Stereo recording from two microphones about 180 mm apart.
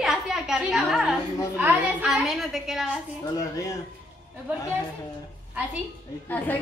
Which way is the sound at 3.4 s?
20° left (ahead or behind).